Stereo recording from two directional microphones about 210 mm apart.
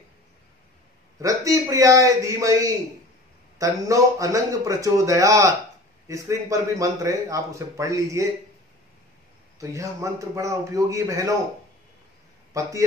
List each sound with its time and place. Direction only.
1.2 s speech: 15° right (ahead or behind)
9.6 s speech: 15° right (ahead or behind)
12.6 s speech: 15° right (ahead or behind)